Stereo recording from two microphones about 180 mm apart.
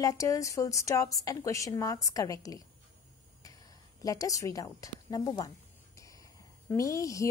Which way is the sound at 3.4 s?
20° left (ahead or behind).